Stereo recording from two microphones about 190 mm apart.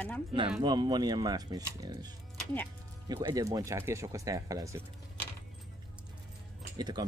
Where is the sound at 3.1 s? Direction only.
20° right (ahead or behind).